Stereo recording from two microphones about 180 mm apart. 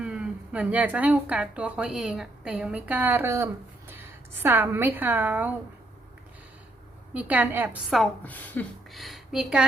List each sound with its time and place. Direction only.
0.0 s a woman's voice: 5° right (ahead or behind)
7.1 s a woman's voice: 10° right (ahead or behind)